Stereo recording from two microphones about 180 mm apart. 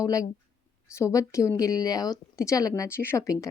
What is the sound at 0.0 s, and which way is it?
Speech, 20° left (ahead or behind).